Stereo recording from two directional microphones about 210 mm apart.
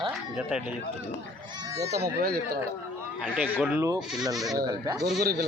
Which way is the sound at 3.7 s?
15° right (ahead or behind).